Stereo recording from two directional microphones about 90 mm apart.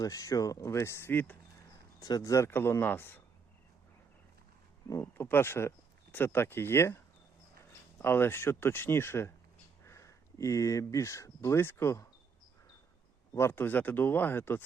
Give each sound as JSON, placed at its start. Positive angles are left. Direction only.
{"t": 0.0, "sound": "speech", "side_deg": 40}
{"t": 2.0, "sound": "speech", "side_deg": 45}
{"t": 2.5, "sound": "speech", "side_deg": 25}
{"t": 5.1, "sound": "speech", "side_deg": 25}
{"t": 13.3, "sound": "speech", "side_deg": 25}